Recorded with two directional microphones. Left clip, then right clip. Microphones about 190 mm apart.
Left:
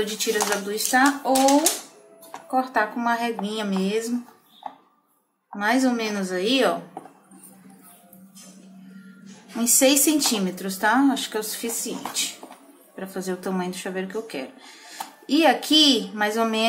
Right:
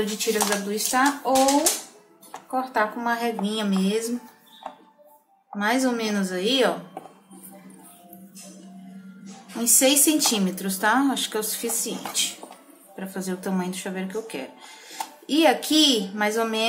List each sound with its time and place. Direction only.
0.0 s speech: 15° left (ahead or behind)
2.5 s speech: 10° left (ahead or behind)
5.6 s speech: 5° left (ahead or behind)
9.6 s speech: 10° left (ahead or behind)